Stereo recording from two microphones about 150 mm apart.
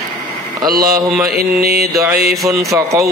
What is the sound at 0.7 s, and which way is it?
Speech, 80° right.